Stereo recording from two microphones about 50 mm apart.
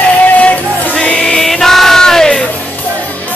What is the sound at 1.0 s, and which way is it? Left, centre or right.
Music, centre.